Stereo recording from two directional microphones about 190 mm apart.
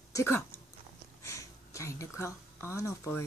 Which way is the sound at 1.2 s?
15° left (ahead or behind).